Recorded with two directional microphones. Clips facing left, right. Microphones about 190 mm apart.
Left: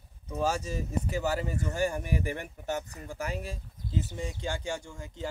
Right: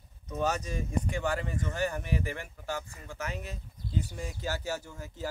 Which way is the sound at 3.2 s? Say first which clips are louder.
Left 3 dB; 35° left (ahead or behind).